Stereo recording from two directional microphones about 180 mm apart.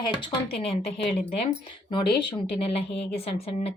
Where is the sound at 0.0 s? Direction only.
25° left (ahead or behind).